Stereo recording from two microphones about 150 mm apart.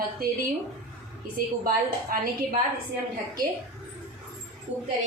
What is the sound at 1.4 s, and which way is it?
Speech, 70° right (ahead or behind).